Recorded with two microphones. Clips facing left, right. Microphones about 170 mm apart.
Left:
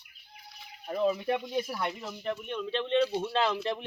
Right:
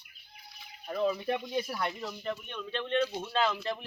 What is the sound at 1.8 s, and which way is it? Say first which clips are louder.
Speech: even; 15° left (ahead or behind).